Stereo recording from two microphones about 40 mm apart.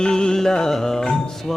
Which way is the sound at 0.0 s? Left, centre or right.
Centre.